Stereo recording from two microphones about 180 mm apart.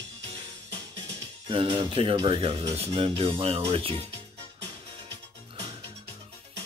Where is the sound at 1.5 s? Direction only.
30° right (ahead or behind).